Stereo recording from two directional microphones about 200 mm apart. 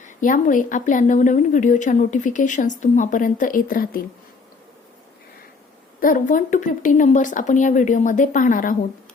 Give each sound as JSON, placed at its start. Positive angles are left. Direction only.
{"t": 0.0, "sound": "a woman's voice", "side_deg": 40}
{"t": 6.0, "sound": "a woman's voice", "side_deg": 45}